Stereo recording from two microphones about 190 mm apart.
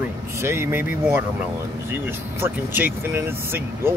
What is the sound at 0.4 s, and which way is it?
Speech, 15° right (ahead or behind).